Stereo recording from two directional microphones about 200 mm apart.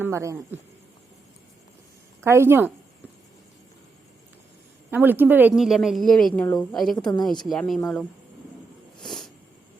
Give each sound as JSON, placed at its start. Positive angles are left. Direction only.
{"t": 0.0, "sound": "a woman's voice", "side_deg": -15}
{"t": 2.2, "sound": "a woman's voice", "side_deg": -15}
{"t": 4.9, "sound": "a woman's voice", "side_deg": -10}
{"t": 6.9, "sound": "a woman's voice", "side_deg": 20}
{"t": 7.4, "sound": "a woman's voice", "side_deg": 0}
{"t": 7.8, "sound": "speech", "side_deg": 10}
{"t": 9.0, "sound": "a sound", "side_deg": 0}